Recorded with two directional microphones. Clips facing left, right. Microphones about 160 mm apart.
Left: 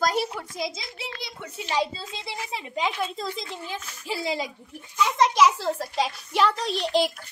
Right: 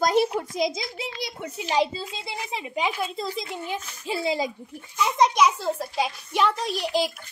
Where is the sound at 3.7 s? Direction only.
25° right (ahead or behind).